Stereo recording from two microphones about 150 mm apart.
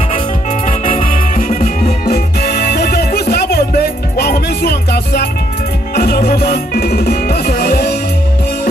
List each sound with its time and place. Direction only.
0.7 s music: 60° left (ahead or behind); by 7.9 s 80° left